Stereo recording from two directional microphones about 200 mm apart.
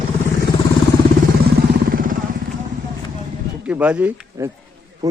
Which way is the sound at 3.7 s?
10° right (ahead or behind).